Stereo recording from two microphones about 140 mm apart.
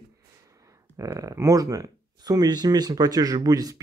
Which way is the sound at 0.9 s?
20° right (ahead or behind).